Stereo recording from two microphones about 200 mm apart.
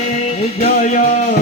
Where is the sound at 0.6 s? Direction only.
40° left (ahead or behind).